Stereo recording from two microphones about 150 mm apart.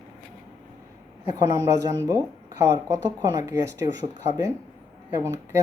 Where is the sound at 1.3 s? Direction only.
25° right (ahead or behind).